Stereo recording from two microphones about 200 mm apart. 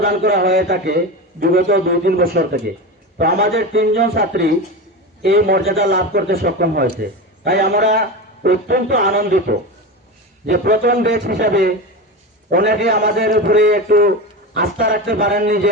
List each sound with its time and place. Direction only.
0.0 s a man's voice: 50° right (ahead or behind)